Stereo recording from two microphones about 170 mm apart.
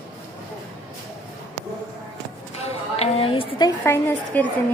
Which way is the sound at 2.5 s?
35° left (ahead or behind).